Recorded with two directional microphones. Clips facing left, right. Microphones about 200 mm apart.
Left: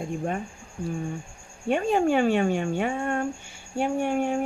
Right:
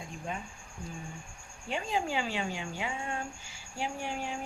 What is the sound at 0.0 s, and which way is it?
Speech, 55° left (ahead or behind).